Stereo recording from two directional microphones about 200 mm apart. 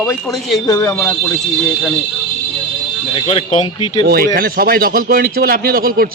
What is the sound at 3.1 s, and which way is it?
Speech, 30° left (ahead or behind).